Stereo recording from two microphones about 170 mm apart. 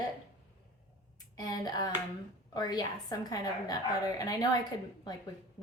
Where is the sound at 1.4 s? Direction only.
25° left (ahead or behind).